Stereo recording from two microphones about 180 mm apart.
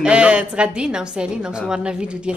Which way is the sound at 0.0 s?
5° right (ahead or behind).